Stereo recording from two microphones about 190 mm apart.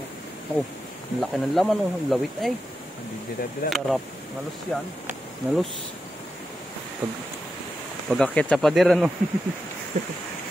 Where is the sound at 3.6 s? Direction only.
50° left (ahead or behind).